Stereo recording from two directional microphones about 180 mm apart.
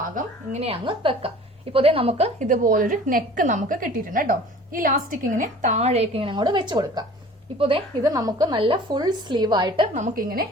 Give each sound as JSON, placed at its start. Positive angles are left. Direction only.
{"t": 0.2, "sound": "a sound", "side_deg": -45}
{"t": 0.6, "sound": "a woman's voice", "side_deg": -30}
{"t": 9.9, "sound": "speech", "side_deg": -50}